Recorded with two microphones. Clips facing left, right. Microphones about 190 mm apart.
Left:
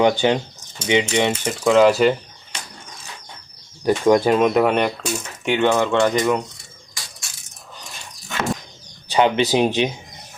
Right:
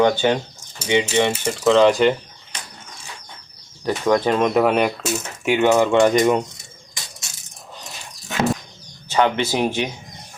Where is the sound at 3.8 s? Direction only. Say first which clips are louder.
Left 3 dB; 10° left (ahead or behind); by 6.4 s 20° right (ahead or behind).